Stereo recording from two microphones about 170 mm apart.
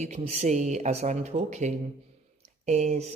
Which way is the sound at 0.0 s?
40° right (ahead or behind).